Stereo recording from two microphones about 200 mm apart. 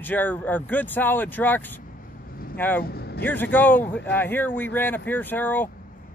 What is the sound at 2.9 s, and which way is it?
Speech, 50° left (ahead or behind).